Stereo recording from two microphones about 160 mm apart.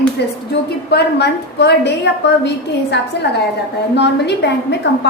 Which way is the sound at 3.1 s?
90° left.